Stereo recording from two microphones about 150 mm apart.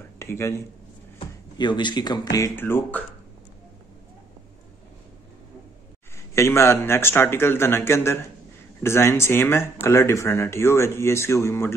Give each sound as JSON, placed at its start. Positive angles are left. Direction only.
{"t": 0.2, "sound": "speech", "side_deg": 15}
{"t": 1.6, "sound": "speech", "side_deg": 30}
{"t": 6.3, "sound": "speech", "side_deg": 20}